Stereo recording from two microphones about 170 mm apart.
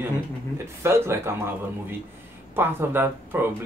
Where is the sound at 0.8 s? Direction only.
15° right (ahead or behind).